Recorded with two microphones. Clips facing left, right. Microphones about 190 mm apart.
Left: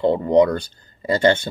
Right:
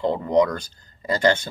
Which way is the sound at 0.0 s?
30° left (ahead or behind).